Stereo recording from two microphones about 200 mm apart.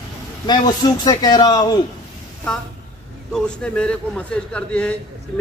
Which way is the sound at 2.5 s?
5° left (ahead or behind).